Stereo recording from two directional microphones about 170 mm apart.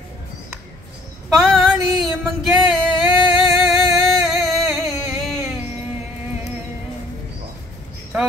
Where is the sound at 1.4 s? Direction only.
Centre (ahead or behind).